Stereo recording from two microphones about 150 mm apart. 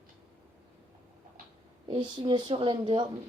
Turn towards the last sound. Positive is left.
turn(degrees=-30)  # may be behind; listen again after turning